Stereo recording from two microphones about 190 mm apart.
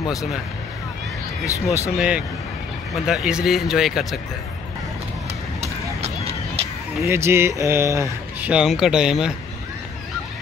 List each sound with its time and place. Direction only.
1.4 s speech: 15° left (ahead or behind)
2.0 s speech: 5° right (ahead or behind)
7.1 s speech: 15° right (ahead or behind)